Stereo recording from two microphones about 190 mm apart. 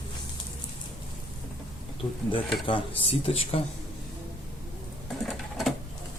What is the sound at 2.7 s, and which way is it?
Speech, 30° left (ahead or behind).